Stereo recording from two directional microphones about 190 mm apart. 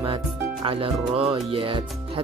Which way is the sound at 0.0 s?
25° right (ahead or behind).